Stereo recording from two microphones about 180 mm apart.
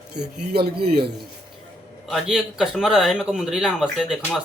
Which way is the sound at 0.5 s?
60° right (ahead or behind).